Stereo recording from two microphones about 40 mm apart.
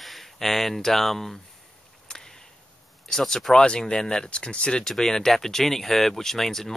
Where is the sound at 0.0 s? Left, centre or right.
Centre.